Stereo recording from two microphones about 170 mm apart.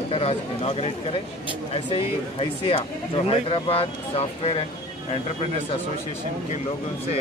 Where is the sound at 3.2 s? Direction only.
35° left (ahead or behind).